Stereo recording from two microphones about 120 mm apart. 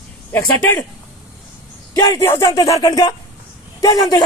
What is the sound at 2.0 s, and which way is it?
Speech, 35° left (ahead or behind).